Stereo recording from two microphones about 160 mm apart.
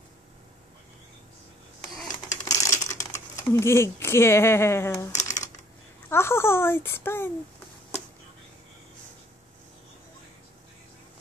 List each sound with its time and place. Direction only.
2.4 s typing: 20° left (ahead or behind)
5.1 s a sound: 50° left (ahead or behind)
6.0 s speech: 15° left (ahead or behind)